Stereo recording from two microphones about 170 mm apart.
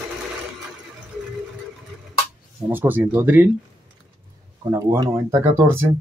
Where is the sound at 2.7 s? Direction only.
10° right (ahead or behind).